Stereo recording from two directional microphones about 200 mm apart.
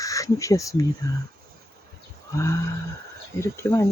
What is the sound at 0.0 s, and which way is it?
Speech, 15° left (ahead or behind).